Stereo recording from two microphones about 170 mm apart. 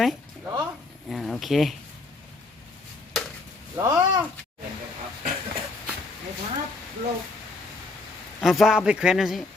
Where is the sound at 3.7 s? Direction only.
20° right (ahead or behind).